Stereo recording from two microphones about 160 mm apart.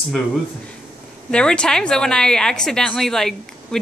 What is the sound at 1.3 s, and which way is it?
Speech, 5° left (ahead or behind).